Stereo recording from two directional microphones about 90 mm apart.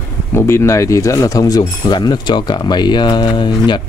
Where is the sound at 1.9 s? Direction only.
55° left (ahead or behind).